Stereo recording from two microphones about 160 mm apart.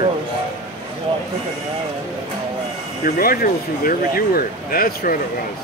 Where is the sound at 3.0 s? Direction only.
65° left (ahead or behind).